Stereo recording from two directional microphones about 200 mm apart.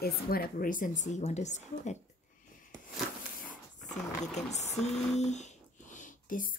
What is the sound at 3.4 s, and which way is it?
Dog, 35° left (ahead or behind).